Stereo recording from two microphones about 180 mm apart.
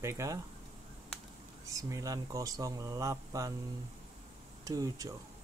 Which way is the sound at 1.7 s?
20° right (ahead or behind).